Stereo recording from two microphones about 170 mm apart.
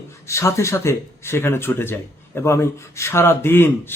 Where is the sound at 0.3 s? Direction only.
15° left (ahead or behind).